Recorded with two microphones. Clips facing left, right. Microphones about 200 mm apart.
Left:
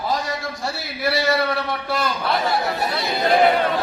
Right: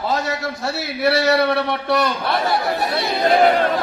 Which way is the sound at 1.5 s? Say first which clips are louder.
Right 5 dB; 70° right (ahead or behind).